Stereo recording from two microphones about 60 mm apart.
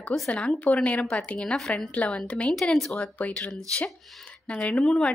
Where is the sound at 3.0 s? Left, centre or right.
Left.